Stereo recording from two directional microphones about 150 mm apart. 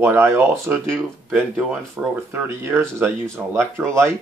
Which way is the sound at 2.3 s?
15° right (ahead or behind).